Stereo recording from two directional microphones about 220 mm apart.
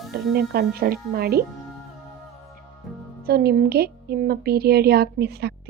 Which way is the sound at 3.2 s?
45° right (ahead or behind).